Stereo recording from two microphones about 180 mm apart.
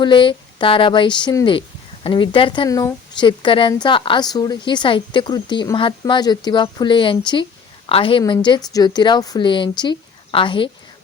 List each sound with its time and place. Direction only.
0.0 s a woman's voice: 25° left (ahead or behind)